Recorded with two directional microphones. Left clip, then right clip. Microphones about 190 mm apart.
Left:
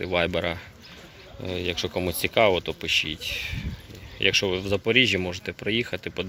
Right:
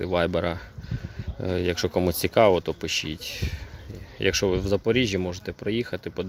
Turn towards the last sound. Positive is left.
turn(degrees=-20)  # may be behind; listen again after turning